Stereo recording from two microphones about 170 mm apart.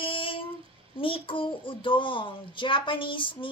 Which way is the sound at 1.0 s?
30° left (ahead or behind).